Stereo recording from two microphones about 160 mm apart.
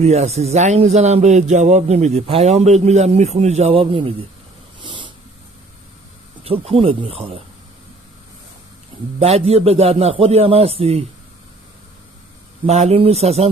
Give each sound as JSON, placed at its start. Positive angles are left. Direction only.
{"t": 0.0, "sound": "speech", "side_deg": -40}
{"t": 4.8, "sound": "vehicle", "side_deg": -30}
{"t": 6.4, "sound": "a man's voice", "side_deg": -35}
{"t": 9.2, "sound": "a man's voice", "side_deg": -40}
{"t": 12.6, "sound": "a man's voice", "side_deg": -40}